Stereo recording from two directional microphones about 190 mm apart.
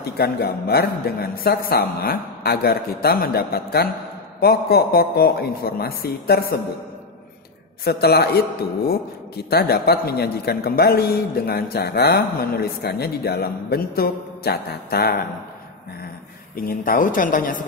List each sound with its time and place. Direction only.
0.0 s a man's voice: 55° left (ahead or behind)
7.8 s a man's voice: 55° left (ahead or behind)
16.5 s a woman's voice: 50° left (ahead or behind)